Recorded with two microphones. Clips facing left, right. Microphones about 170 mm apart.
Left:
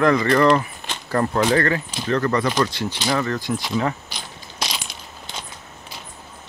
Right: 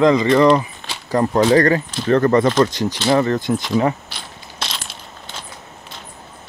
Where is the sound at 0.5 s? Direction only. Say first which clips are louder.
Right 3 dB; 15° right (ahead or behind).